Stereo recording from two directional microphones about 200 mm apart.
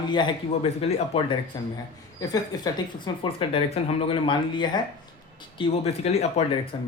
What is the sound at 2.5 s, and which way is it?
Speech, 20° left (ahead or behind).